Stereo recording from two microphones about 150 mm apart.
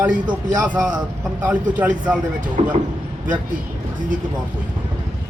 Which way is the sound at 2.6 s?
40° right (ahead or behind).